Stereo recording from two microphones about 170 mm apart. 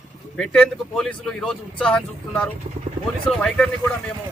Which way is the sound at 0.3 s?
5° left (ahead or behind).